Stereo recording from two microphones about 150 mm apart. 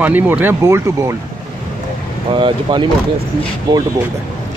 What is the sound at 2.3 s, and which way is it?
Speech, 35° right (ahead or behind).